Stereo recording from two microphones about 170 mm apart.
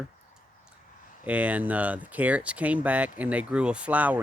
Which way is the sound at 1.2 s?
10° right (ahead or behind).